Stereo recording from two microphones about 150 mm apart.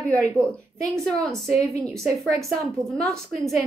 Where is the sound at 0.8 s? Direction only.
Centre (ahead or behind).